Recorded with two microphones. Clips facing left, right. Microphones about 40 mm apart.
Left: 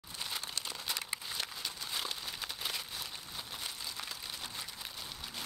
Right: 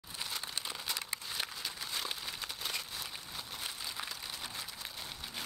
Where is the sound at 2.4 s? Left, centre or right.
Centre.